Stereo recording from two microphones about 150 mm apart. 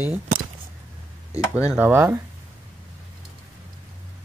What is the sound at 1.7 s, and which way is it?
Speech, 15° right (ahead or behind).